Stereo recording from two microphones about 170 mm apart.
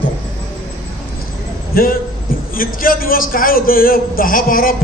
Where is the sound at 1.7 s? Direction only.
60° left (ahead or behind).